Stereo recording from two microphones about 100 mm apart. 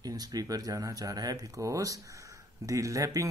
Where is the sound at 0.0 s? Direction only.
40° right (ahead or behind).